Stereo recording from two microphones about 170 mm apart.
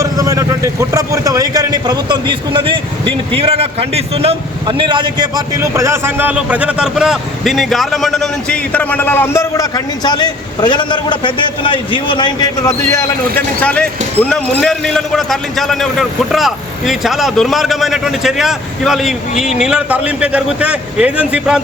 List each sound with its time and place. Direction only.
0.0 s a man's voice: 20° right (ahead or behind)